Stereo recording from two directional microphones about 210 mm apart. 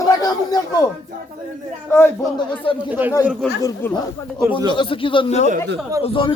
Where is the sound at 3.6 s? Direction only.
15° left (ahead or behind).